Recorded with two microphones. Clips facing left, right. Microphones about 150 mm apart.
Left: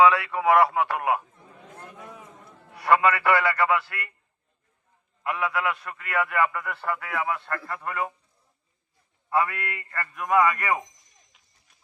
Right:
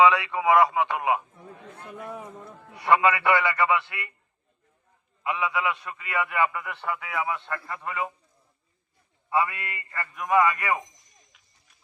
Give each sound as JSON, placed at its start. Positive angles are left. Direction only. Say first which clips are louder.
{"t": 0.0, "sound": "a man's voice", "louder": "left 1 dB", "side_deg": 0}
{"t": 2.7, "sound": "a man's voice", "louder": "even", "side_deg": 0}
{"t": 5.2, "sound": "a man's voice", "louder": "even", "side_deg": 0}
{"t": 9.6, "sound": "a man's voice", "louder": "left 2 dB", "side_deg": -5}